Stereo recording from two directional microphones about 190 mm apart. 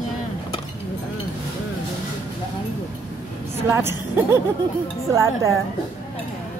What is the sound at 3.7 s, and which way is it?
A woman's voice, 15° right (ahead or behind).